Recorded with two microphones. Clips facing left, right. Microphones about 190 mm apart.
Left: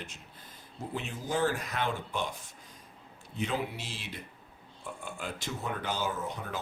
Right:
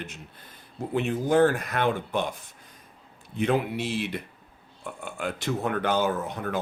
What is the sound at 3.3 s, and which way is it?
Speech, 60° right (ahead or behind).